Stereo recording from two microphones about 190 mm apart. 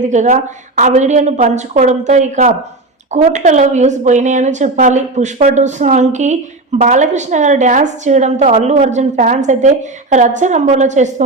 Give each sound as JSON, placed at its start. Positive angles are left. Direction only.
{"t": 0.0, "sound": "a woman's voice", "side_deg": -40}